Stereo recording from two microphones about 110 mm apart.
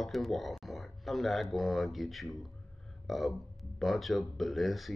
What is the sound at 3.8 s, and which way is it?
Speech, centre (ahead or behind).